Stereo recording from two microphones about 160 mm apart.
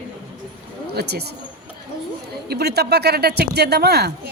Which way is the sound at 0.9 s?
90° right.